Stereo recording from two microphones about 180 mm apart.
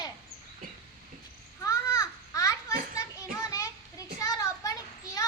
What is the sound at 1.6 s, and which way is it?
Babbling, 20° left (ahead or behind).